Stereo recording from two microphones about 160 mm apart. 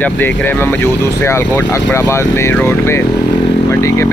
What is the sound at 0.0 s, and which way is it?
Speech, 10° left (ahead or behind).